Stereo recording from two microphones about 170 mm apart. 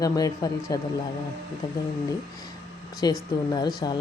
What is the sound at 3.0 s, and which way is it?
Speech, 25° left (ahead or behind).